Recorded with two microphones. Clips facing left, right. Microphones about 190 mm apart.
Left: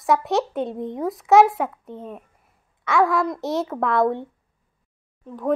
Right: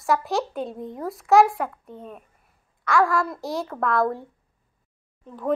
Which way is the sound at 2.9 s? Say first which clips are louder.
Left 2 dB; centre (ahead or behind).